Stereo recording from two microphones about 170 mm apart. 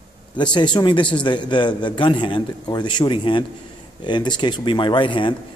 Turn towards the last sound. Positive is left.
turn(degrees=30)  # may be behind; listen again after turning